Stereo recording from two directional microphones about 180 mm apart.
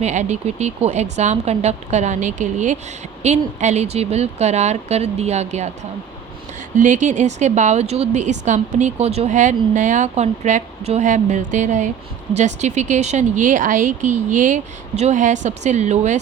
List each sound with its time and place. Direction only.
0.0 s a woman's voice: 40° right (ahead or behind)
6.7 s a woman's voice: 45° right (ahead or behind)